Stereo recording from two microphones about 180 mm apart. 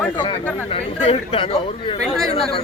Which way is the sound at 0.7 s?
30° left (ahead or behind).